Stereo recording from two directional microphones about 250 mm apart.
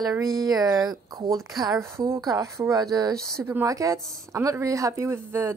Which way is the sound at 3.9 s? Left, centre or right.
Centre.